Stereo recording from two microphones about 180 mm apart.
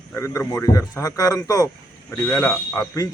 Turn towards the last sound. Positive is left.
turn(degrees=15)  # may be behind; listen again after turning